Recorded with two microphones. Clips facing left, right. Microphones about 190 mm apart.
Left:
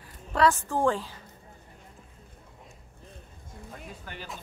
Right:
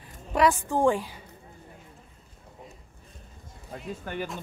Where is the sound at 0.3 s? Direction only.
15° right (ahead or behind).